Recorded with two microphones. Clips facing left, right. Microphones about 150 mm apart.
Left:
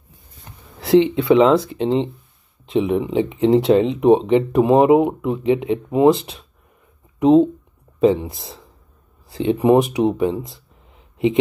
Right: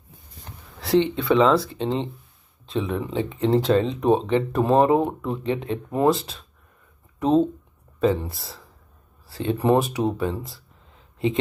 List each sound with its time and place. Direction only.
1.1 s speech: 20° left (ahead or behind)